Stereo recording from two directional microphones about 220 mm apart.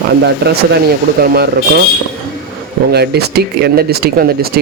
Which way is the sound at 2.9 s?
45° right (ahead or behind).